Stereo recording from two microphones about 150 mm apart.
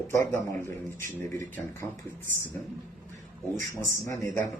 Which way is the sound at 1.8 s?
10° left (ahead or behind).